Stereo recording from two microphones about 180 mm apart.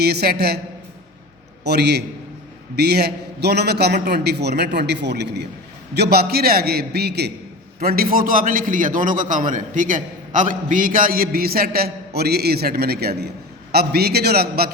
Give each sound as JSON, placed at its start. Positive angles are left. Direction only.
{"t": 0.0, "sound": "a man's voice", "side_deg": -60}
{"t": 1.6, "sound": "a man's voice", "side_deg": -65}